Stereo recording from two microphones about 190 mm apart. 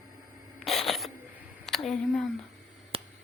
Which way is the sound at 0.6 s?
Centre (ahead or behind).